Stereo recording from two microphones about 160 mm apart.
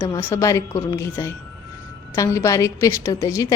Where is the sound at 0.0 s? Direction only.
15° left (ahead or behind).